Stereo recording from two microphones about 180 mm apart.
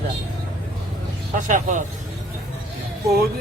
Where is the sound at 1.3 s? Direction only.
45° right (ahead or behind).